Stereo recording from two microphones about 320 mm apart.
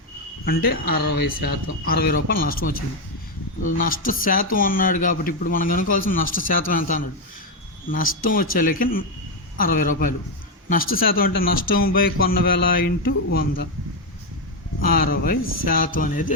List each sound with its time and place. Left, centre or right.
0.4 s a man's voice: left
1.1 s speech: left
1.9 s a man's voice: left
3.8 s a man's voice: left
14.8 s a man's voice: left